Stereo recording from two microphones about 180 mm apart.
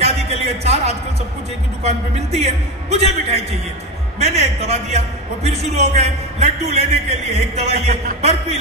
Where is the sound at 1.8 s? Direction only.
35° right (ahead or behind).